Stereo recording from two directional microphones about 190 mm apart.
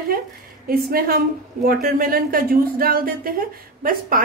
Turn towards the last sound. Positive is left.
turn(degrees=-50)  # may be behind; listen again after turning